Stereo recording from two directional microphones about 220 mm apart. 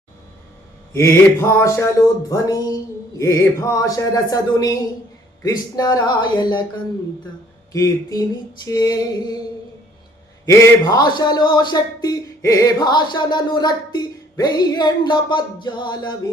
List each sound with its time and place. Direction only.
0.9 s a man's voice: 10° left (ahead or behind)
7.7 s speech: 15° left (ahead or behind)
10.4 s a man's voice: 15° left (ahead or behind)